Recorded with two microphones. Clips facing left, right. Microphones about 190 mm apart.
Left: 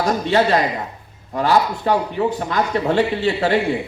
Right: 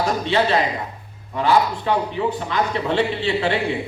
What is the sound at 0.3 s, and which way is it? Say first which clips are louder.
A man's voice: left 3 dB; 45° left (ahead or behind).